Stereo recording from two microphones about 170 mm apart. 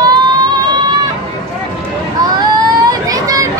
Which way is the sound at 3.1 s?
20° right (ahead or behind).